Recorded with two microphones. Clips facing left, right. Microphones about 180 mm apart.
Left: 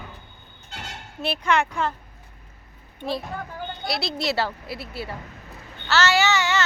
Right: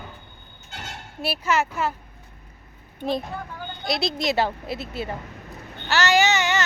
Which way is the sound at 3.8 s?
20° right (ahead or behind).